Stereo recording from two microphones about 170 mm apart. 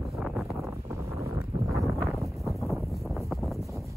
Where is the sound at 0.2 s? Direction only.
5° right (ahead or behind).